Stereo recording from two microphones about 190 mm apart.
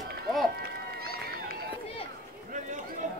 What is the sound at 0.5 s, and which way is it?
Run, 55° right (ahead or behind).